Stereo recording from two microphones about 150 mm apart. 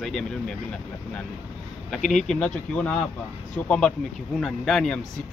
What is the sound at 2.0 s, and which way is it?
Speech, 55° left (ahead or behind).